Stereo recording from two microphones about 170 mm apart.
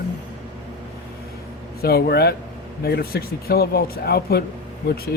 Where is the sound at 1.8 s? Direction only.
70° left (ahead or behind).